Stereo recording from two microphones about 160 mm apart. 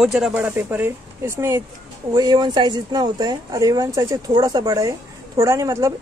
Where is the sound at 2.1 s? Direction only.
25° right (ahead or behind).